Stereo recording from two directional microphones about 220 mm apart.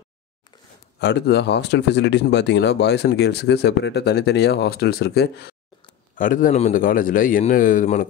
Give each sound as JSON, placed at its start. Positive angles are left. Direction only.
{"t": 0.9, "sound": "a man's voice", "side_deg": 50}